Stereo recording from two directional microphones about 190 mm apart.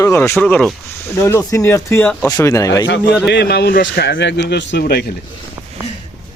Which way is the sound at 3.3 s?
60° left (ahead or behind).